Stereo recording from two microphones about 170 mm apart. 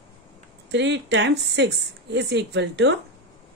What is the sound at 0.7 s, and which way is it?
A woman's voice, 90° right.